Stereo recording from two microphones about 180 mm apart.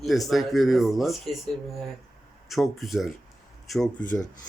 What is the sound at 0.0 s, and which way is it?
Speech, centre (ahead or behind).